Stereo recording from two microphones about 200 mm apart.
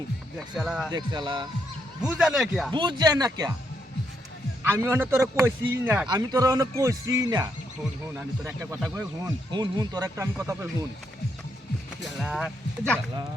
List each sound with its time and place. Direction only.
0.3 s speech: centre (ahead or behind)
0.9 s speech: 20° right (ahead or behind)
2.0 s speech: 5° right (ahead or behind)
2.7 s speech: 20° right (ahead or behind)
4.6 s speech: 10° right (ahead or behind)
9.0 s speech: 20° right (ahead or behind)
12.2 s speech: centre (ahead or behind)